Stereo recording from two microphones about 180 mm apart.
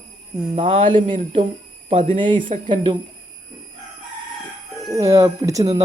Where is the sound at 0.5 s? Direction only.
30° right (ahead or behind).